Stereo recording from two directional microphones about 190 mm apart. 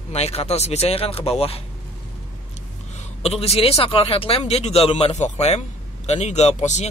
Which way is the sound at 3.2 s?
30° left (ahead or behind).